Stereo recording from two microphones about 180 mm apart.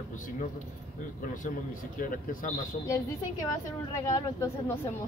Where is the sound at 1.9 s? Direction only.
50° left (ahead or behind).